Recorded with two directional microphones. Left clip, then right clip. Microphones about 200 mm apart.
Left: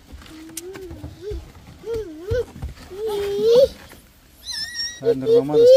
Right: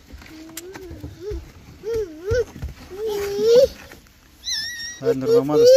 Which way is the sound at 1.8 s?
45° right (ahead or behind).